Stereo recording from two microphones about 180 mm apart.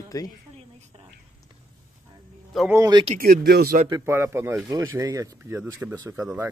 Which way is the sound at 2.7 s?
20° right (ahead or behind).